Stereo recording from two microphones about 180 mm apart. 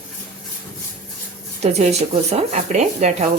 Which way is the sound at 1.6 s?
35° right (ahead or behind).